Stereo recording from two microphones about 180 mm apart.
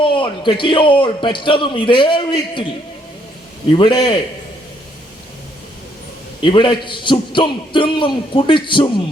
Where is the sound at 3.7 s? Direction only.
25° left (ahead or behind).